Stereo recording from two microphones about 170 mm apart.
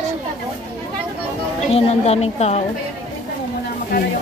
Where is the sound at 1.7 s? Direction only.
40° left (ahead or behind).